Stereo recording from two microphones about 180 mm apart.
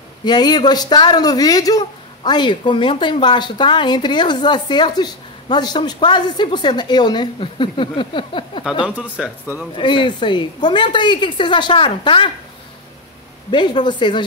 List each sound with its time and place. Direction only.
0.2 s speech: 25° left (ahead or behind)
8.8 s speech: 5° right (ahead or behind)
9.8 s speech: 25° left (ahead or behind)
13.5 s speech: 25° left (ahead or behind)